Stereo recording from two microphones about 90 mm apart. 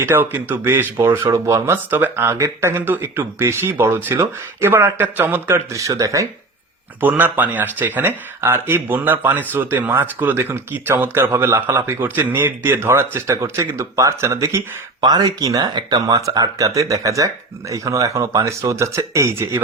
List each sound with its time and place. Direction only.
0.0 s speech: 25° right (ahead or behind)
7.0 s speech: 20° right (ahead or behind)
15.0 s speech: 45° right (ahead or behind); by 19.6 s 30° right (ahead or behind)